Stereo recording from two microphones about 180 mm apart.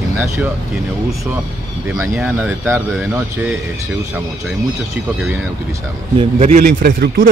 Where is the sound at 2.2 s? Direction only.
10° right (ahead or behind).